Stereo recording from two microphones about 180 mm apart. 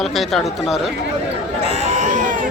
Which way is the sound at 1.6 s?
45° right (ahead or behind).